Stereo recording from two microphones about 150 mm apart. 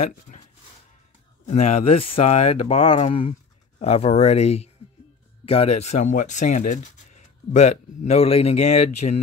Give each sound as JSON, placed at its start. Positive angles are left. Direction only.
{"t": 1.4, "sound": "speech", "side_deg": 50}